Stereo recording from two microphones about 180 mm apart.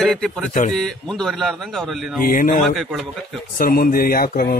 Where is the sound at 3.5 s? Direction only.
55° left (ahead or behind).